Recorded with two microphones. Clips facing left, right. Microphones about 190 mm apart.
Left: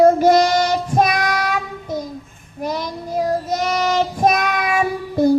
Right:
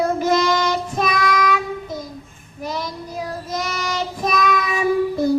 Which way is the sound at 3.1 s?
45° left (ahead or behind).